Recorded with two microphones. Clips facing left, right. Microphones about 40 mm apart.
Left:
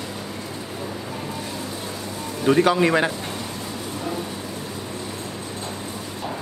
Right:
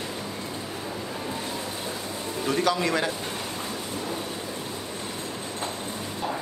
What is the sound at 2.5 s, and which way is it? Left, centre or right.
Speech, left.